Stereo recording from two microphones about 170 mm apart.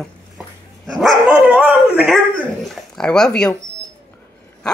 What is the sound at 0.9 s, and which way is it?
Dog, 5° right (ahead or behind).